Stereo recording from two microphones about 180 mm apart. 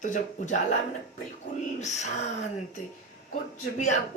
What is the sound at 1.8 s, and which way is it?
Speech, 40° left (ahead or behind).